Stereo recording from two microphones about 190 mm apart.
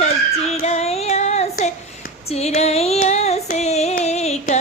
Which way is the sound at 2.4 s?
35° left (ahead or behind).